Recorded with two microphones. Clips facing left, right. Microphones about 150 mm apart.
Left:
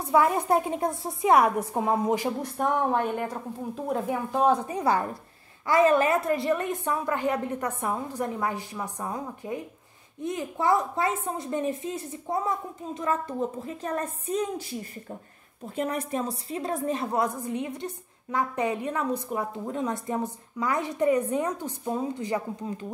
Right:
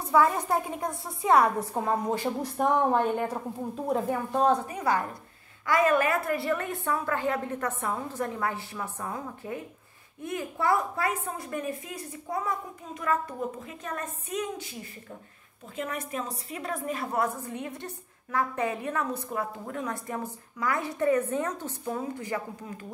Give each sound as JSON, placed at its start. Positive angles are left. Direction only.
{"t": 0.0, "sound": "a woman's voice", "side_deg": 20}
{"t": 2.3, "sound": "speech", "side_deg": 0}
{"t": 4.6, "sound": "a woman's voice", "side_deg": 30}